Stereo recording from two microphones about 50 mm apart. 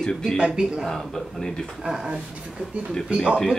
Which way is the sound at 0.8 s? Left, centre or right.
Centre.